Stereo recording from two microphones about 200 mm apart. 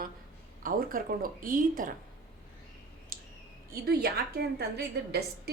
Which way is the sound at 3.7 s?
50° right (ahead or behind).